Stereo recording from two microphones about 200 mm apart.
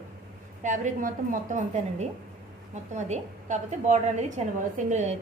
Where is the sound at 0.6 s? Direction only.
40° right (ahead or behind).